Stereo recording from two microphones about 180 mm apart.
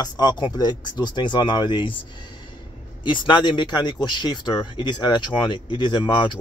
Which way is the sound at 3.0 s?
25° left (ahead or behind).